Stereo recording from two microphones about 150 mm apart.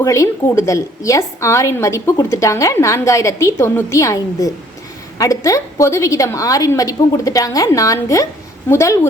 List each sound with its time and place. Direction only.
0.0 s a woman's voice: 20° left (ahead or behind)